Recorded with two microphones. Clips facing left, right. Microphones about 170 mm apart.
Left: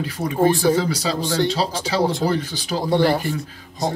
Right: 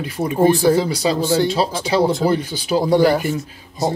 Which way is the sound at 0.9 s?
10° right (ahead or behind).